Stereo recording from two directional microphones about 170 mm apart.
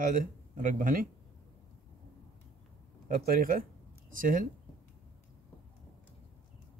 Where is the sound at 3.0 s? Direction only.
55° right (ahead or behind).